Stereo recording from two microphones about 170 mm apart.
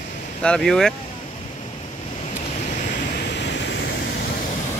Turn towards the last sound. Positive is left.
turn(degrees=90)